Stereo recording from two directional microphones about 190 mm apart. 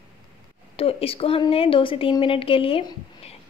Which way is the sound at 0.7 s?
30° left (ahead or behind).